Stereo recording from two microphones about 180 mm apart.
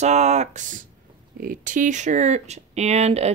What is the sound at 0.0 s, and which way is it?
Speech, 40° right (ahead or behind).